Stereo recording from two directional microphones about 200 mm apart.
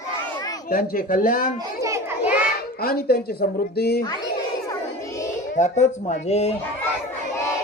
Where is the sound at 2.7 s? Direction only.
50° left (ahead or behind).